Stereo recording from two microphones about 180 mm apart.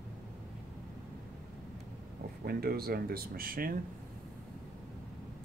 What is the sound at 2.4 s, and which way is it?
Speech, 60° right (ahead or behind).